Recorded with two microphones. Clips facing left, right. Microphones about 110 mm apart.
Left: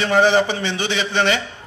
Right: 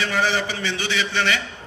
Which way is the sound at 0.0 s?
25° left (ahead or behind).